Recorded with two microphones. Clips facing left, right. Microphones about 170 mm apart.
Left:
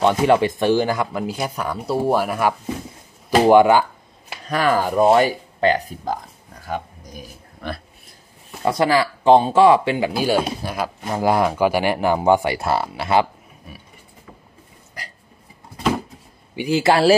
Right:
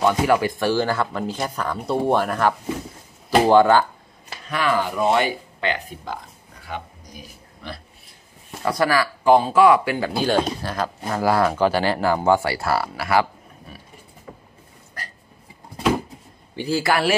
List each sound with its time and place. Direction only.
0.0 s speech: 25° left (ahead or behind)
4.5 s speech: 45° left (ahead or behind)
7.6 s speech: 55° left (ahead or behind)
8.6 s speech: 25° left (ahead or behind)
10.1 s speech: 10° left (ahead or behind)
13.7 s speech: 10° left (ahead or behind)
16.5 s speech: 20° left (ahead or behind)